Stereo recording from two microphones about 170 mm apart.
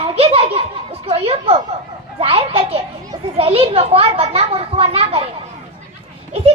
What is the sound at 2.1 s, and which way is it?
A child's voice, 35° right (ahead or behind).